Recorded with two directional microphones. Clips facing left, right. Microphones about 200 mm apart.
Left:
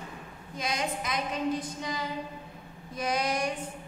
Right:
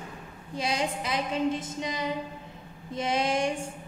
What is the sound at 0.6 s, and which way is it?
A woman's voice, 30° right (ahead or behind).